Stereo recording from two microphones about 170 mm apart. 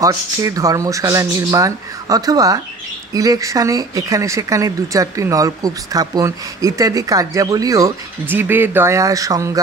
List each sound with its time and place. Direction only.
0.0 s speech: 20° right (ahead or behind)